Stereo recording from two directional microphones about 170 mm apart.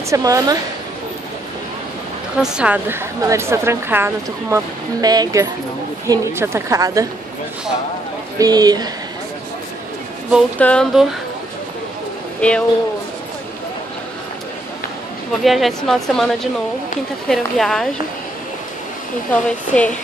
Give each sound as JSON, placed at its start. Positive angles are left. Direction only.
{"t": 0.1, "sound": "a woman's voice", "side_deg": -20}
{"t": 2.4, "sound": "a woman's voice", "side_deg": -5}
{"t": 8.4, "sound": "a woman's voice", "side_deg": -20}
{"t": 10.6, "sound": "a woman's voice", "side_deg": 5}
{"t": 12.4, "sound": "speech", "side_deg": 5}
{"t": 15.4, "sound": "a woman's voice", "side_deg": 0}
{"t": 17.3, "sound": "a woman's voice", "side_deg": 0}
{"t": 19.3, "sound": "speech", "side_deg": 5}